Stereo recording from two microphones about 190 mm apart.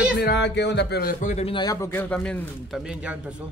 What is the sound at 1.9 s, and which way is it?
A man's voice, 10° left (ahead or behind).